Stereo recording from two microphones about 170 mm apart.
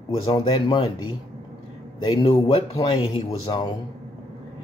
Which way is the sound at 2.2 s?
35° left (ahead or behind).